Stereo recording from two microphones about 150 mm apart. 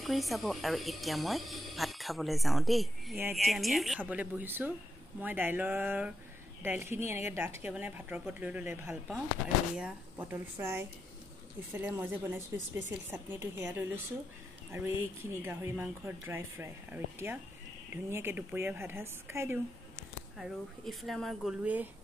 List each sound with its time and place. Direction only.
0.0 s speech: centre (ahead or behind); by 19.6 s 15° right (ahead or behind)
20.3 s speech: centre (ahead or behind)